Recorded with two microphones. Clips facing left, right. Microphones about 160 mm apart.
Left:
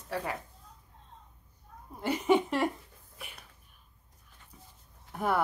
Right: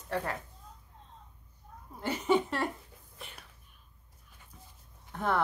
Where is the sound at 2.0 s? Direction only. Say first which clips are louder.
Left 2 dB; 10° left (ahead or behind).